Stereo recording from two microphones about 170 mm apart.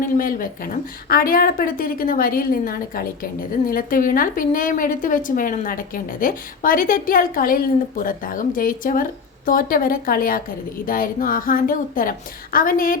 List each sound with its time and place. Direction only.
0.2 s a woman's voice: 55° left (ahead or behind)